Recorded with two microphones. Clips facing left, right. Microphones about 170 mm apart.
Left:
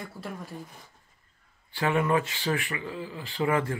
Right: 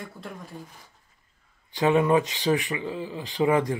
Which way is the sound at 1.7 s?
20° right (ahead or behind).